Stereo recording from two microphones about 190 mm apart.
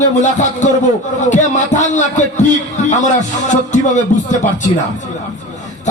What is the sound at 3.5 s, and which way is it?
Speech, 40° left (ahead or behind).